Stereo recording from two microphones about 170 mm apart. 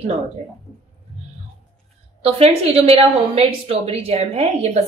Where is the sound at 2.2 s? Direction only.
35° right (ahead or behind).